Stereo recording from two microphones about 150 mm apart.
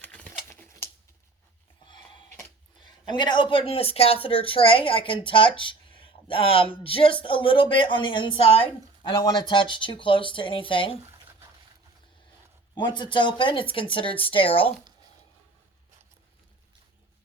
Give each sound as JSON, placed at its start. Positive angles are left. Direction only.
{"t": 0.0, "sound": "typewriter", "side_deg": 10}
{"t": 0.4, "sound": "a sound", "side_deg": 10}
{"t": 3.1, "sound": "speech", "side_deg": 30}
{"t": 12.7, "sound": "speech", "side_deg": 30}